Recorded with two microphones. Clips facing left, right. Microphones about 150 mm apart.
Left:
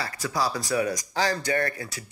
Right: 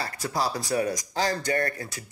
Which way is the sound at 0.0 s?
25° right (ahead or behind).